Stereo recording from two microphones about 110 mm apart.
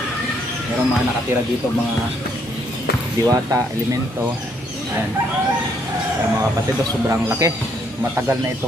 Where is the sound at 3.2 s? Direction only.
30° right (ahead or behind).